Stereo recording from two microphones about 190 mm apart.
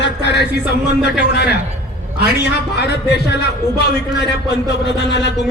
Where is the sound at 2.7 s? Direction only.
60° left (ahead or behind).